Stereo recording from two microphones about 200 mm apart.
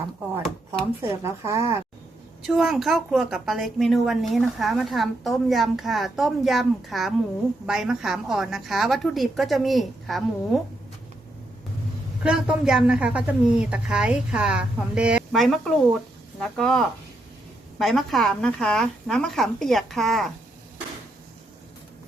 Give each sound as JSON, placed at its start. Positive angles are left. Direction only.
{"t": 1.2, "sound": "speech", "side_deg": -15}
{"t": 2.5, "sound": "a woman's voice", "side_deg": 0}
{"t": 12.2, "sound": "a woman's voice", "side_deg": -5}